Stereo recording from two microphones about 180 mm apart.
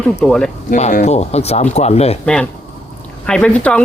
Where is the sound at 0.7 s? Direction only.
45° left (ahead or behind).